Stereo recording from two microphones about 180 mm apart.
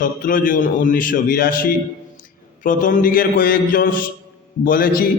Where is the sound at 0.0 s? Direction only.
50° left (ahead or behind).